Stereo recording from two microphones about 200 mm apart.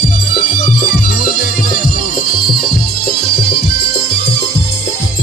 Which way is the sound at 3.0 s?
50° left (ahead or behind).